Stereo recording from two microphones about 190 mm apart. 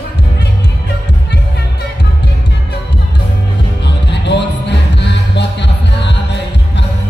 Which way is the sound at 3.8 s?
65° left (ahead or behind).